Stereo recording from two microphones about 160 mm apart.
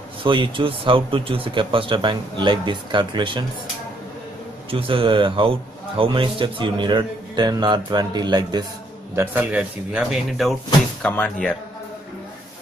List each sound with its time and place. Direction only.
0.2 s a man's voice: 30° right (ahead or behind)
4.6 s a man's voice: 35° right (ahead or behind)
9.1 s speech: 15° right (ahead or behind); by 11.5 s 5° left (ahead or behind)